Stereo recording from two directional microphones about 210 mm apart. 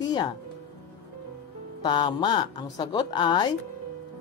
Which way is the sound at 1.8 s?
20° left (ahead or behind).